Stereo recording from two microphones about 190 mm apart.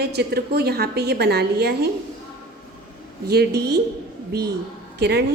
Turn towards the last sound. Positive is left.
turn(degrees=-60)  # may be behind; listen again after turning